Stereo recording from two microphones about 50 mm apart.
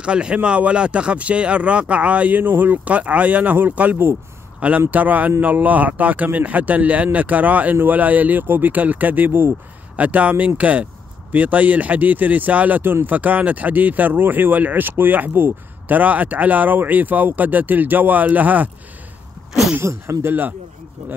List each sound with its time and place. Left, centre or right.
0.0 s speech: right
2.9 s speech: right
9.9 s speech: right
16.0 s speech: right
19.8 s speech: right
20.2 s speech: right